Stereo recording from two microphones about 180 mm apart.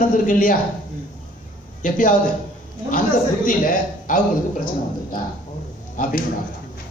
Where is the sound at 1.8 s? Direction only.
50° left (ahead or behind).